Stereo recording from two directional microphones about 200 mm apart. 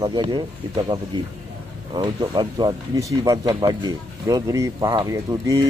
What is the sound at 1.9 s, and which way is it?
Speech, 25° right (ahead or behind).